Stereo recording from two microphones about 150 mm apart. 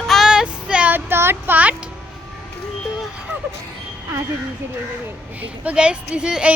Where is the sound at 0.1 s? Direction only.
5° right (ahead or behind).